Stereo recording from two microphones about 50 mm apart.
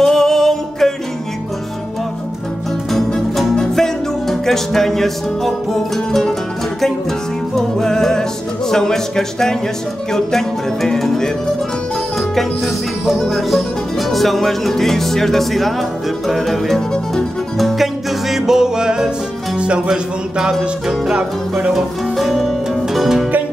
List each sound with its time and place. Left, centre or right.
0.0 s music: centre
3.5 s music: centre
7.5 s music: centre
22.1 s music: centre